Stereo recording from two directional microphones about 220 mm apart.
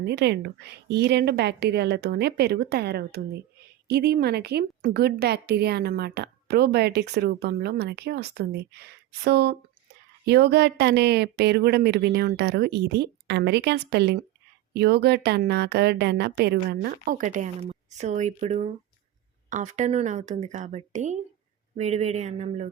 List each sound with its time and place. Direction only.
0.0 s a woman's voice: 50° right (ahead or behind); by 22.7 s 30° right (ahead or behind)